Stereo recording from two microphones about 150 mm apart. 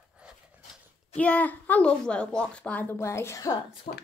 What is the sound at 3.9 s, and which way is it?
Speech, 45° left (ahead or behind).